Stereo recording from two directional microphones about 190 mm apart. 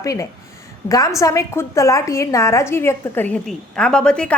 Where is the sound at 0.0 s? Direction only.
15° left (ahead or behind).